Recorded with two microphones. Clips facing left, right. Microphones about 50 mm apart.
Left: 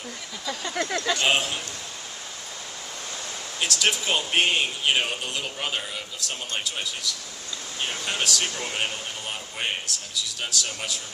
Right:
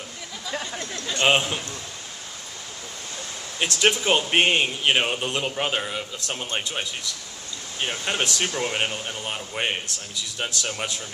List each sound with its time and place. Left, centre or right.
0.8 s speech: left
1.3 s speech: centre
3.6 s speech: right
7.9 s speech: right